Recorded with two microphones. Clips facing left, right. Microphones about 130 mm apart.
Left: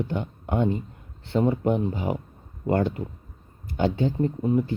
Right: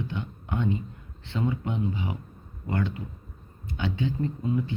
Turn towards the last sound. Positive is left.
turn(degrees=35)  # may be behind; listen again after turning